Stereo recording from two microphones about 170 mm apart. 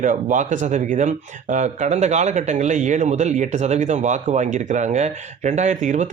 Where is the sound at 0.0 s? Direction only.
45° right (ahead or behind).